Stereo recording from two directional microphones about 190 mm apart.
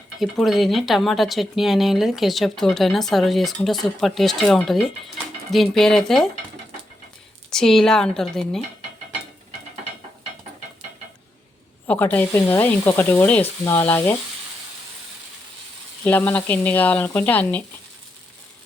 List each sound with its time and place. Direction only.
0.2 s speech: centre (ahead or behind)
7.5 s speech: centre (ahead or behind)
11.9 s speech: 10° left (ahead or behind)
16.0 s speech: 10° left (ahead or behind)